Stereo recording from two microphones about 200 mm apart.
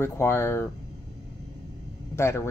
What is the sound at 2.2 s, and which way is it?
Speech, 15° left (ahead or behind).